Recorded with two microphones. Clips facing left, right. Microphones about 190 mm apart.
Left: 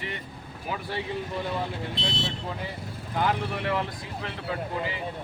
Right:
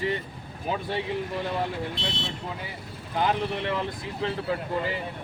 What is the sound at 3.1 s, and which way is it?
Speech, 20° right (ahead or behind).